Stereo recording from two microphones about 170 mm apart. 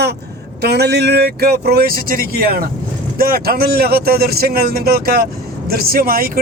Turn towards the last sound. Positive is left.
turn(degrees=-60)  # may be behind; listen again after turning